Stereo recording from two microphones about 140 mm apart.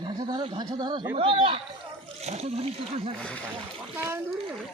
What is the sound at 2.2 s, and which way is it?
Speech, 50° right (ahead or behind).